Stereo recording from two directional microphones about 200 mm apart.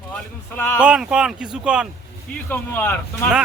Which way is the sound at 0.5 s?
10° left (ahead or behind).